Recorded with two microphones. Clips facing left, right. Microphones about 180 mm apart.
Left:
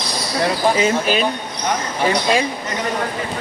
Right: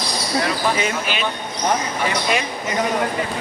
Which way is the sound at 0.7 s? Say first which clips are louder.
Left 6 dB; 30° left (ahead or behind).